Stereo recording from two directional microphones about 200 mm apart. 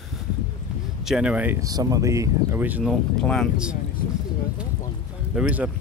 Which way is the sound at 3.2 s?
Centre (ahead or behind).